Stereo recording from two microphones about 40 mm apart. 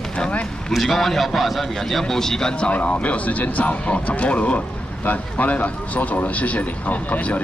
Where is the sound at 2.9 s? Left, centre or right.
Left.